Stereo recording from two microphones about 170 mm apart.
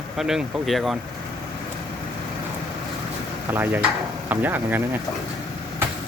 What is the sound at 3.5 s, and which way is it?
Speech, 10° right (ahead or behind).